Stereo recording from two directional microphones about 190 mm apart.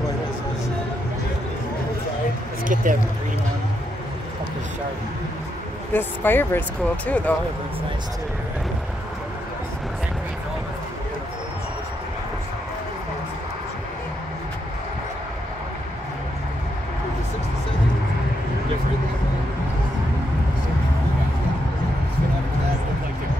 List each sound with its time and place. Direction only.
2.7 s speech: 45° right (ahead or behind)
5.9 s speech: 10° left (ahead or behind)